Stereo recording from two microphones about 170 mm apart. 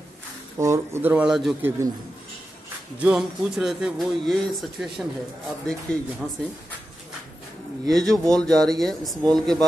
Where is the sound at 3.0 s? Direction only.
5° right (ahead or behind).